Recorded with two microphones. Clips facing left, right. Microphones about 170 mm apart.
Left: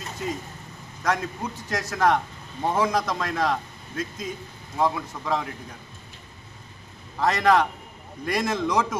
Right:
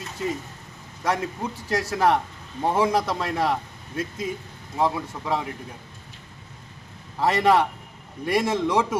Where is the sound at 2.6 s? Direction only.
10° right (ahead or behind).